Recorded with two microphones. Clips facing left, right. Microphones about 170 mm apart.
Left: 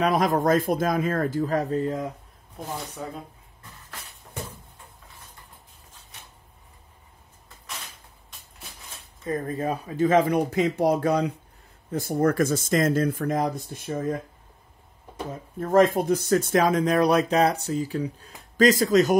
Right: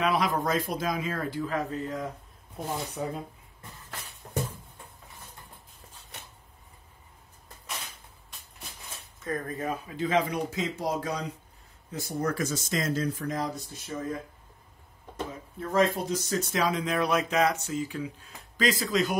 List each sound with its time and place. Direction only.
0.0 s speech: 45° left (ahead or behind)
3.0 s speech: 5° right (ahead or behind)
9.2 s speech: 25° left (ahead or behind); by 14.0 s 55° left (ahead or behind)
15.6 s speech: 50° left (ahead or behind)